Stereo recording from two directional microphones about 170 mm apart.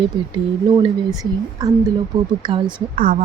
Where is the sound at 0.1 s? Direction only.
30° right (ahead or behind).